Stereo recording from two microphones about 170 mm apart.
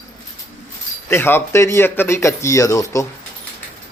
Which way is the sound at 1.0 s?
15° left (ahead or behind).